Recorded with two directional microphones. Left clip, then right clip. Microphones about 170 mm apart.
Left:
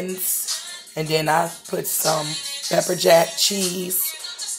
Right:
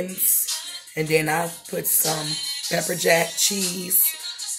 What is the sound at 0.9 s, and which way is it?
Speech, 10° left (ahead or behind).